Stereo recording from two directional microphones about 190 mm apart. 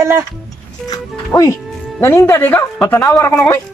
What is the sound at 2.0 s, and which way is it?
Speech, 15° left (ahead or behind).